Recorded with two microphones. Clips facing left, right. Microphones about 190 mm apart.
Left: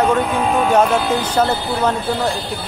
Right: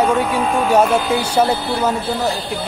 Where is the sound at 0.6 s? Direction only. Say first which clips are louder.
Right 1 dB; 10° right (ahead or behind).